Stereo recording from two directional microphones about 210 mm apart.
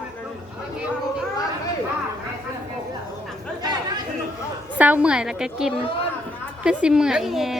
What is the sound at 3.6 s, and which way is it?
Chatter, 20° right (ahead or behind).